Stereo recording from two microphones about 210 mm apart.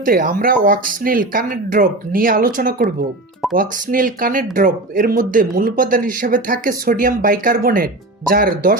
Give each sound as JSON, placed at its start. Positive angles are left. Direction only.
{"t": 0.0, "sound": "speech", "side_deg": -40}